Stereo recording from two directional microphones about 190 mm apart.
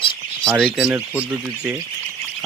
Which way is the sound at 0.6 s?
Centre (ahead or behind).